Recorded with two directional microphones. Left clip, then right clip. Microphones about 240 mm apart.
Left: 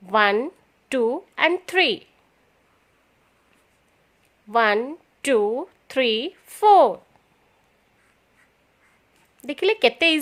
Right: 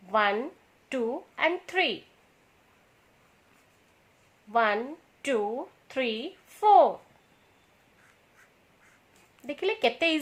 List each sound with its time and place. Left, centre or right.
0.0 s a woman's voice: left
4.5 s a woman's voice: left
9.4 s speech: left